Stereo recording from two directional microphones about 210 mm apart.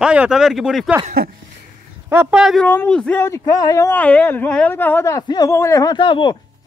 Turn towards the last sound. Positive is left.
turn(degrees=20)  # may be behind; listen again after turning